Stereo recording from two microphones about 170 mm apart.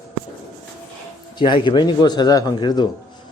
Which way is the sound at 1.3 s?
25° left (ahead or behind).